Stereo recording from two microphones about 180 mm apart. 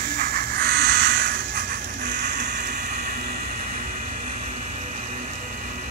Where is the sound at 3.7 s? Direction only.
45° right (ahead or behind).